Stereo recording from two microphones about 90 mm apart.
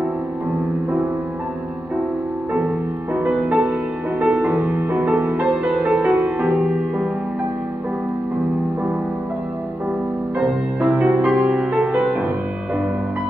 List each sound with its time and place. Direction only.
3.3 s music: 15° right (ahead or behind)
10.8 s music: 15° right (ahead or behind)